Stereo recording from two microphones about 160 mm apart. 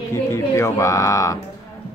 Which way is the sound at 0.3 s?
20° left (ahead or behind).